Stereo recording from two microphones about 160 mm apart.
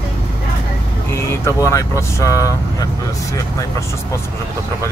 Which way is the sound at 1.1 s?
15° left (ahead or behind).